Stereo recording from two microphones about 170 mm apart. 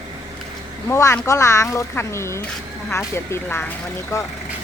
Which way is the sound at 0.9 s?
15° left (ahead or behind).